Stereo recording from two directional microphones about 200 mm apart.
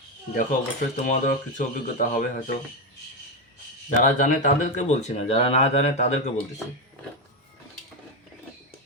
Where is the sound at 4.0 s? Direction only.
40° left (ahead or behind).